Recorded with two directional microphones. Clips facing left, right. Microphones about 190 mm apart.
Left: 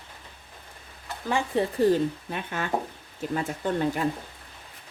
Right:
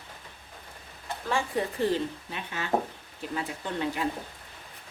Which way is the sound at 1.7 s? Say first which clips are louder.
Left 8 dB; 50° left (ahead or behind).